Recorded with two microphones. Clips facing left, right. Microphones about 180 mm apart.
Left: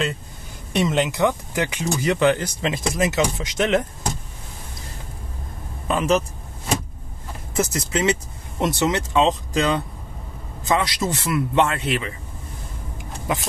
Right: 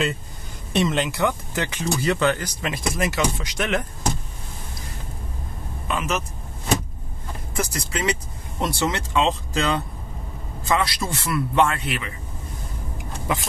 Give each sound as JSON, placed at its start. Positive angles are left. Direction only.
{"t": 0.7, "sound": "speech", "side_deg": 15}
{"t": 5.9, "sound": "speech", "side_deg": 35}
{"t": 7.5, "sound": "speech", "side_deg": 25}